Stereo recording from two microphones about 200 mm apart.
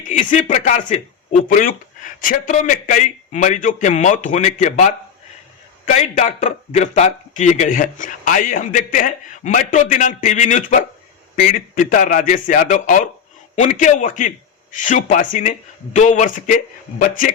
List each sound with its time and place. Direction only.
0.1 s a man's voice: 40° left (ahead or behind)